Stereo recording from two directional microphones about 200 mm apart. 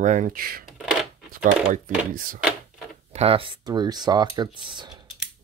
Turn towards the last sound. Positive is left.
turn(degrees=-20)  # may be behind; listen again after turning